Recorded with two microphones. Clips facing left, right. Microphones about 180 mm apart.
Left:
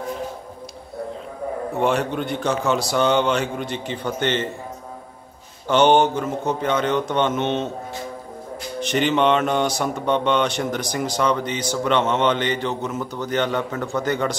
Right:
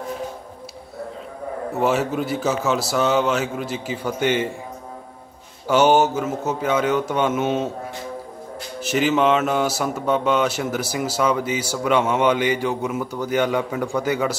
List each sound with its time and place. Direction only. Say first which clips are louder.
1.7 s a man's voice: right 1 dB; 5° right (ahead or behind)
5.7 s speech: even; 5° right (ahead or behind)
8.7 s speech: even; 5° right (ahead or behind)